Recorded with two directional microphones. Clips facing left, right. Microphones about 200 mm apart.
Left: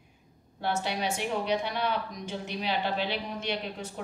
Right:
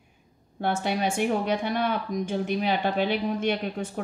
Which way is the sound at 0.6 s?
50° right (ahead or behind).